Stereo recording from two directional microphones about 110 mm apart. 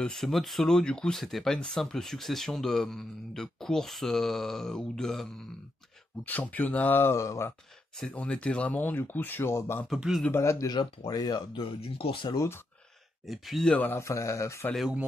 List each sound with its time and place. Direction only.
0.0 s speech: 5° left (ahead or behind)
6.2 s speech: 15° left (ahead or behind)
8.0 s speech: 10° left (ahead or behind)
9.8 s speech: 5° right (ahead or behind)
10.3 s a man's voice: 25° left (ahead or behind)
11.1 s speech: 40° left (ahead or behind)
11.8 s speech: 55° left (ahead or behind)
13.3 s speech: centre (ahead or behind)
13.7 s a man's voice: 20° left (ahead or behind)